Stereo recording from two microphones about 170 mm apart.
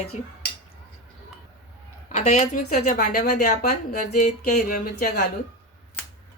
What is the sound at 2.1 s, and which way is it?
A woman's voice, 40° left (ahead or behind).